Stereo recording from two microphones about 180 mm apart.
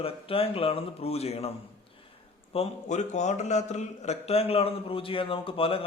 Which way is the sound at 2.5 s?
35° left (ahead or behind).